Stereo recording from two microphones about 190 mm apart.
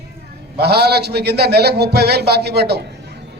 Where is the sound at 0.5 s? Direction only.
55° right (ahead or behind).